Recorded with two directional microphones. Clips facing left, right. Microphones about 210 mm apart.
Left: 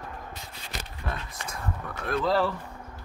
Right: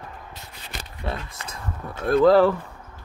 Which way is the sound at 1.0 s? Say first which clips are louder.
Right 5 dB; 30° right (ahead or behind).